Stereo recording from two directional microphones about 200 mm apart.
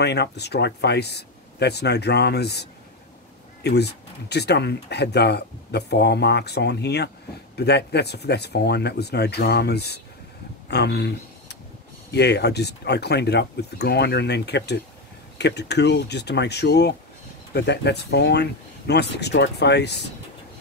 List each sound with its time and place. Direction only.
0.0 s speech: 55° left (ahead or behind)